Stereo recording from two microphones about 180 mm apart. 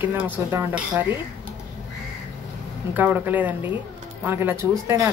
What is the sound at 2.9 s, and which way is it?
Speech, 10° right (ahead or behind).